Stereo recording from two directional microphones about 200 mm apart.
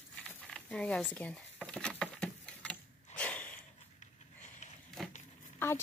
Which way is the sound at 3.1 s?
5° left (ahead or behind).